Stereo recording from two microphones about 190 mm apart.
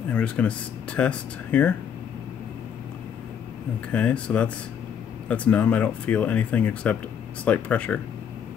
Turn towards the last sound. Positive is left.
turn(degrees=5)  # may be behind; listen again after turning